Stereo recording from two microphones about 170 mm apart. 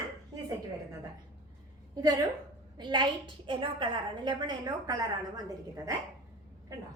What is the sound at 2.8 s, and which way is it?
A woman's voice, 25° right (ahead or behind).